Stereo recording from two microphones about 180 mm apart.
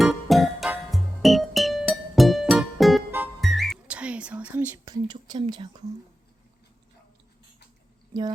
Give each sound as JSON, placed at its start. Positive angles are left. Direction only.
{"t": 0.0, "sound": "music", "side_deg": 0}
{"t": 4.9, "sound": "whispering", "side_deg": -25}